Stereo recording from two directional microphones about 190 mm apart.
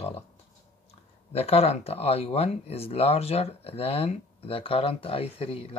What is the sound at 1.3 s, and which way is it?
Speech, 30° left (ahead or behind).